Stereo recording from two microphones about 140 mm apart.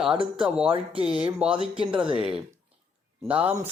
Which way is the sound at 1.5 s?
40° right (ahead or behind).